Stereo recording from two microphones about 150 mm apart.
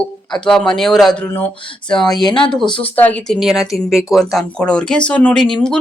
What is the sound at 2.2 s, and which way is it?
Speech, 35° left (ahead or behind).